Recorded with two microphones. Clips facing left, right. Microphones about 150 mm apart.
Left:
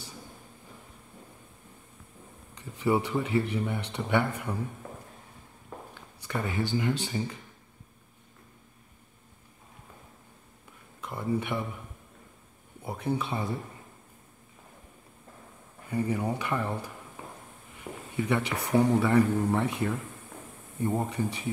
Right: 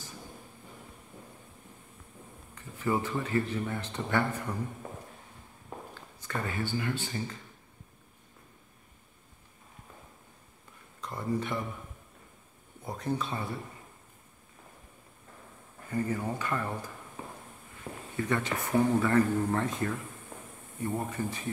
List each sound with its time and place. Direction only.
2.5 s a sound: 15° left (ahead or behind)
3.1 s speech: 15° left (ahead or behind)
6.2 s speech: 15° left (ahead or behind)
11.0 s a sound: 5° left (ahead or behind)
12.8 s speech: 10° left (ahead or behind)
15.9 s speech: 10° left (ahead or behind)
17.7 s a sound: 10° left (ahead or behind)
18.7 s speech: 15° left (ahead or behind)
20.8 s speech: 20° left (ahead or behind)